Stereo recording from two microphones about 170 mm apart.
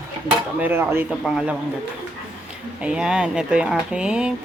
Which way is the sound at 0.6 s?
10° right (ahead or behind).